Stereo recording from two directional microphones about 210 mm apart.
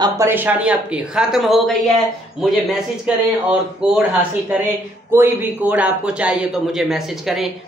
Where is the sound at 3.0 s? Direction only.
5° right (ahead or behind).